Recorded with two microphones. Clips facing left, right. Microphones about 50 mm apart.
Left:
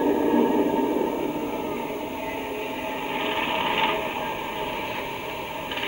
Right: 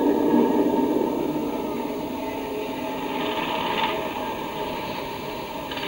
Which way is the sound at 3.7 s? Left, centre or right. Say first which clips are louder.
Left 2 dB; left.